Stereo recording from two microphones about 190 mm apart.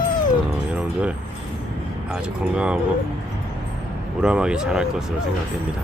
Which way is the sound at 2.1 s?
5° right (ahead or behind).